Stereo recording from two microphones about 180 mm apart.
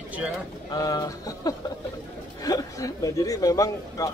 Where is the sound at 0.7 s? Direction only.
20° left (ahead or behind).